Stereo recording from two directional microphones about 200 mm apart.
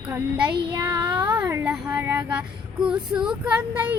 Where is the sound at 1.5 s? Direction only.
15° right (ahead or behind).